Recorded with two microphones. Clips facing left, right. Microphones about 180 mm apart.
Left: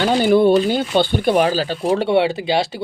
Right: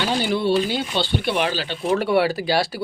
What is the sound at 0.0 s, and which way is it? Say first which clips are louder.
Speech: left 8 dB; 50° left (ahead or behind).